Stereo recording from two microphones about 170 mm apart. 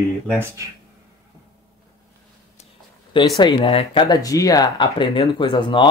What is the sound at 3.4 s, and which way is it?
Speech, 35° left (ahead or behind).